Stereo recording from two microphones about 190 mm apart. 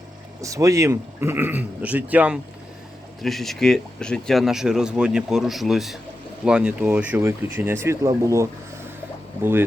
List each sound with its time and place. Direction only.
0.4 s speech: 15° right (ahead or behind)